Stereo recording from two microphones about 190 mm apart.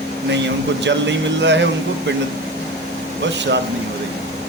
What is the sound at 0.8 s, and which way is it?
Speech, 70° right (ahead or behind).